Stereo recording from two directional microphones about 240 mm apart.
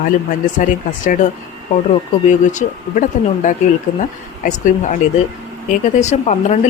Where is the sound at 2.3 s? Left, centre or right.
Left.